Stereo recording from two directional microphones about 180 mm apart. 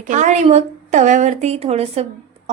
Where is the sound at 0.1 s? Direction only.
40° right (ahead or behind).